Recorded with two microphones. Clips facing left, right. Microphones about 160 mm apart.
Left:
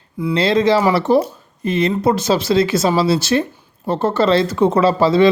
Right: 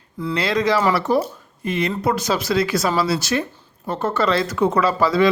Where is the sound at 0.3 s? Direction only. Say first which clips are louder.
Left 5 dB; 25° left (ahead or behind).